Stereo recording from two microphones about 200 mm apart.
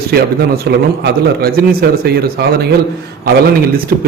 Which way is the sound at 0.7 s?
50° right (ahead or behind).